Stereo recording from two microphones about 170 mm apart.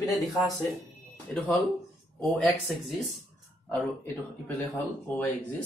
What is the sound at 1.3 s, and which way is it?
Speech, 5° left (ahead or behind).